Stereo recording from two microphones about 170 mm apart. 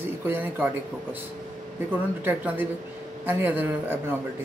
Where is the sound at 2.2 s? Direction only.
10° right (ahead or behind).